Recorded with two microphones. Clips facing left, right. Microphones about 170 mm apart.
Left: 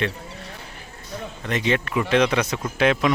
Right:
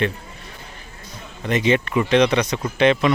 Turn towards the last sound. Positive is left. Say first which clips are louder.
# right 3 dB
turn(degrees=5)  # may be behind; listen again after turning